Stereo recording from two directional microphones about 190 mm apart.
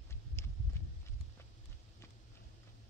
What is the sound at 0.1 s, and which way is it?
Horse, 15° left (ahead or behind).